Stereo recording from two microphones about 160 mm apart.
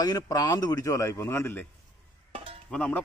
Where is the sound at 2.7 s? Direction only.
10° left (ahead or behind).